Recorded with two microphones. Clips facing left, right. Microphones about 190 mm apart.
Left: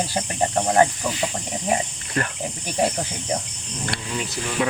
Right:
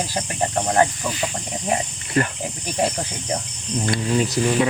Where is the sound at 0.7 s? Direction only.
15° left (ahead or behind).